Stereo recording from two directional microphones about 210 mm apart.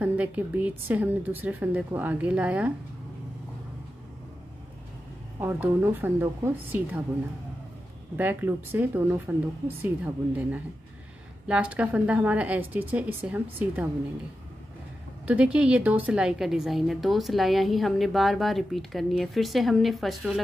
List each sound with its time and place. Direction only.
0.0 s a woman's voice: 5° right (ahead or behind)
5.4 s a woman's voice: 10° right (ahead or behind)
8.2 s a woman's voice: 10° right (ahead or behind)
15.2 s a woman's voice: 5° right (ahead or behind)